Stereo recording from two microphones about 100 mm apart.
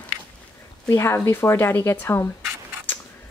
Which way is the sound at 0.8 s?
25° left (ahead or behind).